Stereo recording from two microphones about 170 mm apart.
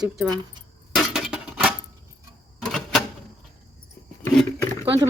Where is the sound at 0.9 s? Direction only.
Centre (ahead or behind).